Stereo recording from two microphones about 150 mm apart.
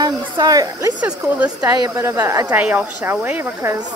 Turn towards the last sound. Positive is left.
turn(degrees=-15)  # may be behind; listen again after turning